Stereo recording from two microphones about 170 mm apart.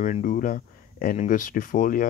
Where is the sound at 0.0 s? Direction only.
50° left (ahead or behind).